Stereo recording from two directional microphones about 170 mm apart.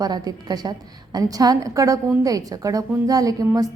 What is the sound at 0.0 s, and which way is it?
A woman's voice, 25° right (ahead or behind).